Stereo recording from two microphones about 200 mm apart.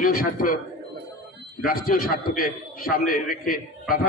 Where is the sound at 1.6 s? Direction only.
45° left (ahead or behind).